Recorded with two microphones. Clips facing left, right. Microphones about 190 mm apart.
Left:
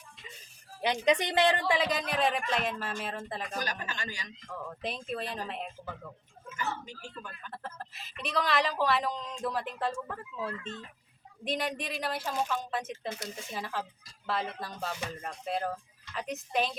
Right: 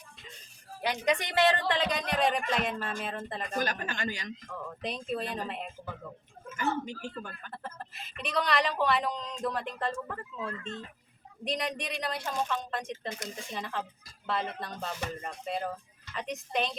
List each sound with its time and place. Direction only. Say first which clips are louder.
0.8 s speech: left 2 dB; 20° left (ahead or behind); by 3.5 s centre (ahead or behind)
3.6 s speech: right 4 dB; 55° right (ahead or behind)
4.7 s speech: right 2 dB; centre (ahead or behind)
6.5 s a woman's voice: right 5 dB; 55° right (ahead or behind)
7.5 s speech: left 2 dB; centre (ahead or behind)